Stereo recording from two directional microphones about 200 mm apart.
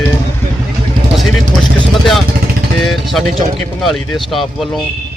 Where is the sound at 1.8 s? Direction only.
Centre (ahead or behind).